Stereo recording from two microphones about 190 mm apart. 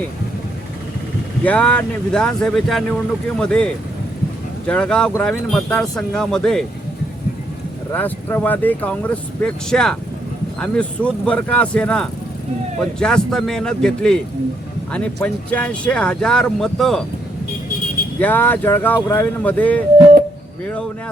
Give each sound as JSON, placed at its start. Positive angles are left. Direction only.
{"t": 1.5, "sound": "speech", "side_deg": 5}
{"t": 7.9, "sound": "speech", "side_deg": 10}
{"t": 18.2, "sound": "speech", "side_deg": 10}